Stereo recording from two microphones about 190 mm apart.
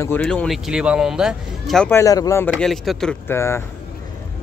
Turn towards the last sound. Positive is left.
turn(degrees=15)  # may be behind; listen again after turning